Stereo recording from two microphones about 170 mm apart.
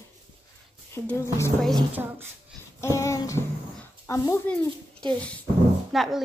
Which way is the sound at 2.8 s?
15° left (ahead or behind).